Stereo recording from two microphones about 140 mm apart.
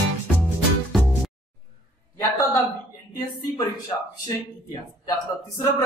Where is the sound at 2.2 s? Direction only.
20° left (ahead or behind).